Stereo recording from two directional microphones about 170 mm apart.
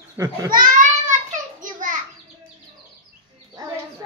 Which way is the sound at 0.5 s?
50° right (ahead or behind).